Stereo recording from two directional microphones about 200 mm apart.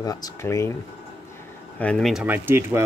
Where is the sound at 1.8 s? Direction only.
5° left (ahead or behind).